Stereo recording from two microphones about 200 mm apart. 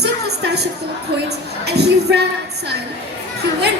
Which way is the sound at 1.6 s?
55° right (ahead or behind).